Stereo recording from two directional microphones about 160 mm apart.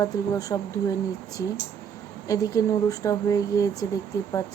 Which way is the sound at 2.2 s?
20° left (ahead or behind).